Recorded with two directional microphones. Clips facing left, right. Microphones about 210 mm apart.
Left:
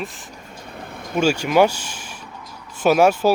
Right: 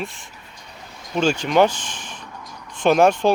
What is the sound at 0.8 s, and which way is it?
Vehicle, 55° left (ahead or behind).